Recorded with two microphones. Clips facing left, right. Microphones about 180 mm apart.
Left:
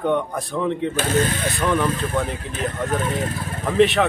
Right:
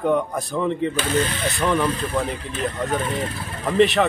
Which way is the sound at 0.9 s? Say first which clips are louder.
Left 2 dB; 45° left (ahead or behind).